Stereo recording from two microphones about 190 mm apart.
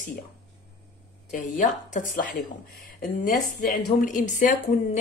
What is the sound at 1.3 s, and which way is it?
Speech, 40° left (ahead or behind).